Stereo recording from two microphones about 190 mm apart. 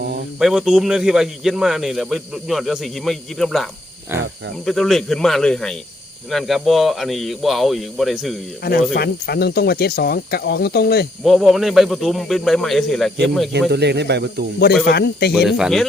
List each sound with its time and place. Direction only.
0.3 s speech: 5° right (ahead or behind)
8.6 s speech: 55° left (ahead or behind)
11.2 s speech: centre (ahead or behind)
13.7 s speech: 60° right (ahead or behind)
14.8 s speech: 60° left (ahead or behind)
15.3 s speech: centre (ahead or behind)